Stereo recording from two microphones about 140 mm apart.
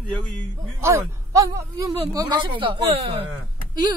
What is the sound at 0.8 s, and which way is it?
Speech, 20° right (ahead or behind).